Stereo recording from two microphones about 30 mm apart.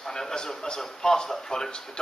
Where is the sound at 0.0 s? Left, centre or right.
Centre.